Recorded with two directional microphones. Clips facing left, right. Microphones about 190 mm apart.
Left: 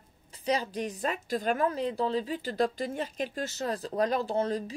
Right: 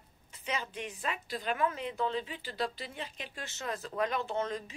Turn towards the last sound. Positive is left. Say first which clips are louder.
# left 5 dB
turn(degrees=35)  # may be behind; listen again after turning